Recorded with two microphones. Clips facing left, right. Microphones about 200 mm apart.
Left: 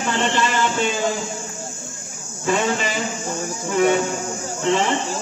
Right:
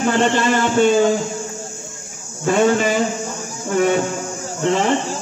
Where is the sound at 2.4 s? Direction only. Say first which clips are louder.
Right 6 dB; 50° right (ahead or behind).